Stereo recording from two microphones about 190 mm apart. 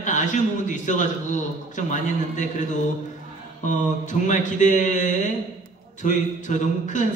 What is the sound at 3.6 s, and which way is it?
A man's voice, 40° left (ahead or behind).